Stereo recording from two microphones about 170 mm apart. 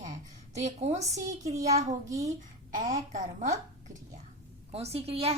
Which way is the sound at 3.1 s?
50° right (ahead or behind).